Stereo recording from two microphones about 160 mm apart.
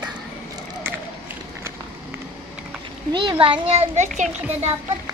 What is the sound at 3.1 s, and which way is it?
A child's voice, 30° right (ahead or behind).